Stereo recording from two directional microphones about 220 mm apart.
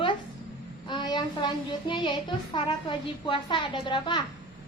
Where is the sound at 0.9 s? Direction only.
20° left (ahead or behind).